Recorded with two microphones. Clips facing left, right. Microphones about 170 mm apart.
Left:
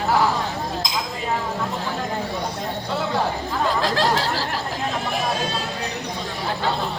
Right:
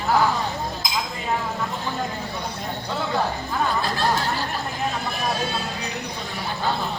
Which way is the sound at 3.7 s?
90° left.